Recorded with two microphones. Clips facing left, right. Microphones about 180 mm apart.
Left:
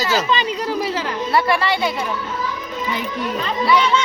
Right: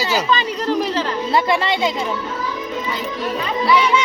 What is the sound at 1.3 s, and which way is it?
Speech, 20° right (ahead or behind).